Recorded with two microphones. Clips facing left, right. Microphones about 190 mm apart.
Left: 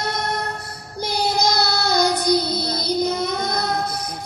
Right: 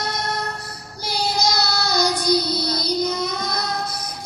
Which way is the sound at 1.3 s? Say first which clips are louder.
Even; 55° left (ahead or behind).